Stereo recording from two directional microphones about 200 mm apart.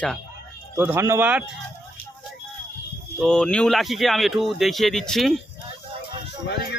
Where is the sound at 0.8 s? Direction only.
10° right (ahead or behind).